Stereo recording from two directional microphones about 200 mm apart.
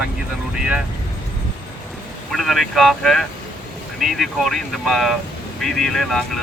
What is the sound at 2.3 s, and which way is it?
Speech, centre (ahead or behind).